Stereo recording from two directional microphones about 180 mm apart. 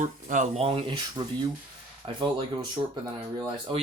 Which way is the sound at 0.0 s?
45° right (ahead or behind).